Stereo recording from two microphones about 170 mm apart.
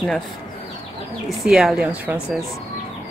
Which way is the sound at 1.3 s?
5° right (ahead or behind).